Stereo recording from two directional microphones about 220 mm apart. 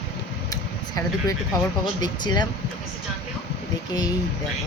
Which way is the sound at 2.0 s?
20° left (ahead or behind).